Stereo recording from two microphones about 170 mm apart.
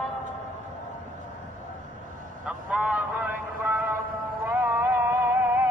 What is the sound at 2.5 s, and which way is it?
Vehicle, 5° right (ahead or behind).